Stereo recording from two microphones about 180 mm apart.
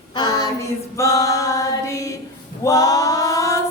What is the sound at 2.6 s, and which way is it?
Female singing, 20° left (ahead or behind).